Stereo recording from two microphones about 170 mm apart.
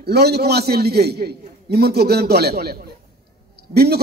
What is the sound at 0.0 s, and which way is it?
A man's voice, 70° right (ahead or behind).